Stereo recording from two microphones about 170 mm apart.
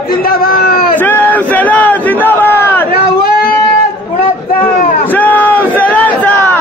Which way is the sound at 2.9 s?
60° left (ahead or behind).